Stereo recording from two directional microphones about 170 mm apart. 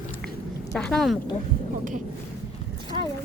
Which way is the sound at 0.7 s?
5° left (ahead or behind).